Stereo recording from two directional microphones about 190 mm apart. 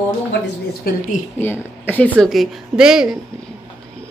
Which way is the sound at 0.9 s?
50° left (ahead or behind).